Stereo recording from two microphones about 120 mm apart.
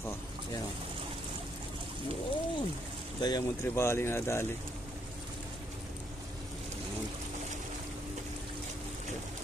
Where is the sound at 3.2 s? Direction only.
35° left (ahead or behind).